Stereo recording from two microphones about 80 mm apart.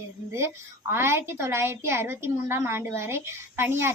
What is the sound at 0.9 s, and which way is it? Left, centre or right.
A woman's voice, right.